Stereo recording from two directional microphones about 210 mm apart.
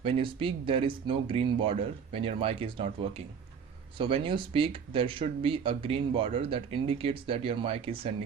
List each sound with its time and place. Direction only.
0.0 s speech: 25° right (ahead or behind)